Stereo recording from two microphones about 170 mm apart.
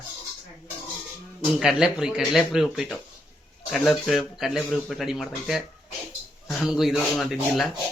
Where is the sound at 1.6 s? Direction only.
5° right (ahead or behind).